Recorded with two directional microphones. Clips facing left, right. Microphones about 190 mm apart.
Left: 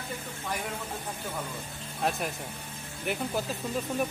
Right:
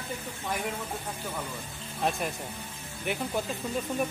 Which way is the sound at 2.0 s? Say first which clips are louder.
Right 1 dB; centre (ahead or behind).